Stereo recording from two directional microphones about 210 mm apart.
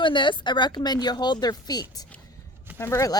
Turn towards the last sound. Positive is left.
turn(degrees=15)  # may be behind; listen again after turning